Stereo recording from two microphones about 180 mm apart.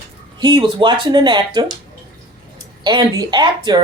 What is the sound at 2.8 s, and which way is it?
Speech, 25° right (ahead or behind).